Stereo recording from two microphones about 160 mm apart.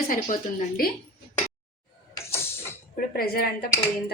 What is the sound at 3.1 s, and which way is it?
Speech, 65° left (ahead or behind).